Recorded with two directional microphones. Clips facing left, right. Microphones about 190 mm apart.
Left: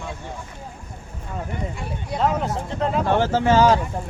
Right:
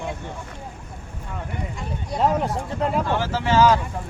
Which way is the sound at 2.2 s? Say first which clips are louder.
Right 1 dB; 10° right (ahead or behind).